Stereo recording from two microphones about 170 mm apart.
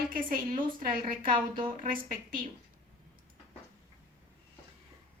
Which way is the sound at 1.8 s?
55° right (ahead or behind).